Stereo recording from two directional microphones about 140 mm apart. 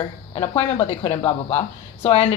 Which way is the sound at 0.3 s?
40° left (ahead or behind).